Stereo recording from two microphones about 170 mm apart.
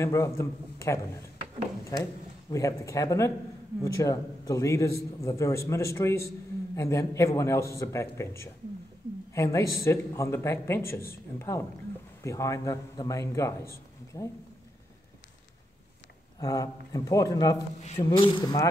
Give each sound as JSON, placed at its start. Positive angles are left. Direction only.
{"t": 0.0, "sound": "a man's voice", "side_deg": 15}
{"t": 16.3, "sound": "a man's voice", "side_deg": 20}